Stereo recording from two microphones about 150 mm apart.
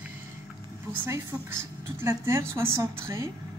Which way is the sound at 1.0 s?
15° right (ahead or behind).